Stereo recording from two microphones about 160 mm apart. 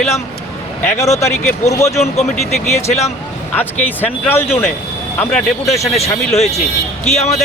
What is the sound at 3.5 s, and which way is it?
Speech, 10° left (ahead or behind).